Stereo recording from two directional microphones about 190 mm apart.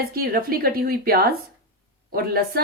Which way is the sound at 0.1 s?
50° right (ahead or behind).